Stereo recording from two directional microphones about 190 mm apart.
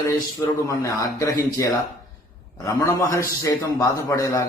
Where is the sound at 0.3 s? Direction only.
15° left (ahead or behind).